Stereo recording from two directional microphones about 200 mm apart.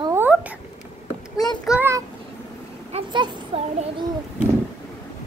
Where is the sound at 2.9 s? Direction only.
25° right (ahead or behind).